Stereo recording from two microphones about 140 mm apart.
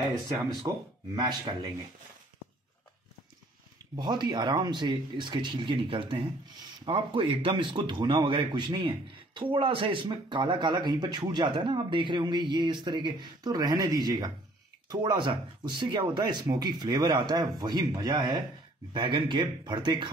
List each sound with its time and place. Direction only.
0.7 s speech: 25° right (ahead or behind)
3.9 s speech: 30° right (ahead or behind)